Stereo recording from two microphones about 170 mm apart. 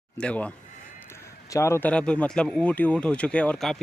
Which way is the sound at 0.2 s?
5° left (ahead or behind).